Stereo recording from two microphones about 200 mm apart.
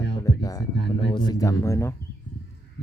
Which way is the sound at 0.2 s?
15° left (ahead or behind).